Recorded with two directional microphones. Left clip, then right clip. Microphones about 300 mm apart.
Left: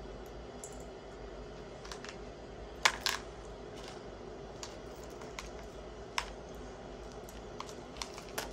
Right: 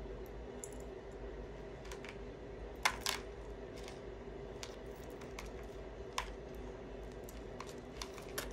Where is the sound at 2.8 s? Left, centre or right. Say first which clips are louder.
Left 5 dB; left.